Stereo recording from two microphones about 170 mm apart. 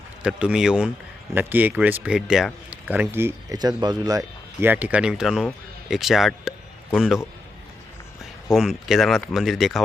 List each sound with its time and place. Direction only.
0.2 s speech: 5° right (ahead or behind)
8.5 s speech: centre (ahead or behind)